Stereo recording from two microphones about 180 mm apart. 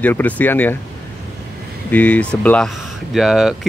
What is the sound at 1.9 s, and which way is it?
Speech, 10° left (ahead or behind).